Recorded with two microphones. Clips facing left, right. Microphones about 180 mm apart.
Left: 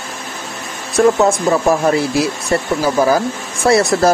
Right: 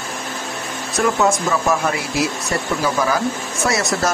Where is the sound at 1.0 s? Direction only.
35° left (ahead or behind).